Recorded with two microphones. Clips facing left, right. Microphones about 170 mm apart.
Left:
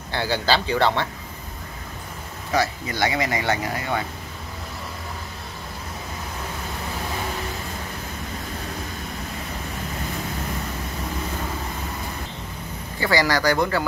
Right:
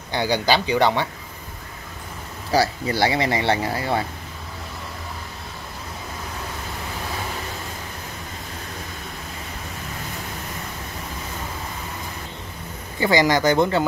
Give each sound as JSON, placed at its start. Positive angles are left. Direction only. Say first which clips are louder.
{"t": 0.1, "sound": "speech", "louder": "right 2 dB", "side_deg": -15}
{"t": 2.5, "sound": "speech", "louder": "right 3 dB", "side_deg": -30}
{"t": 13.0, "sound": "speech", "louder": "right 3 dB", "side_deg": -20}